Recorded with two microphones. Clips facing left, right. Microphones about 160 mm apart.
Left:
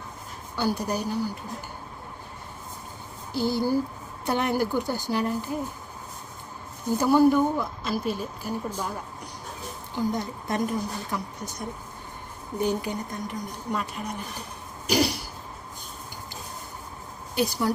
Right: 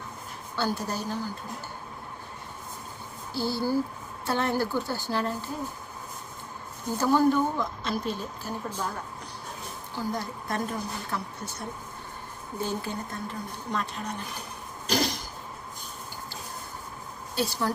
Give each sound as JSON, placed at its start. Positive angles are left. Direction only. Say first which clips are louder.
{"t": 0.5, "sound": "a woman's voice", "louder": "left 3 dB", "side_deg": 15}
{"t": 3.3, "sound": "a woman's voice", "louder": "left 3 dB", "side_deg": 20}
{"t": 7.0, "sound": "a woman's voice", "louder": "left 3 dB", "side_deg": 10}
{"t": 9.9, "sound": "a woman's voice", "louder": "left 4 dB", "side_deg": 20}
{"t": 14.8, "sound": "cough", "louder": "left 4 dB", "side_deg": 10}
{"t": 17.3, "sound": "a woman's voice", "louder": "left 3 dB", "side_deg": 15}